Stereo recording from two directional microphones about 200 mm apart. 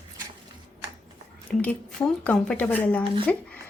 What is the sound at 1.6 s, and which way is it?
Speech, 5° left (ahead or behind).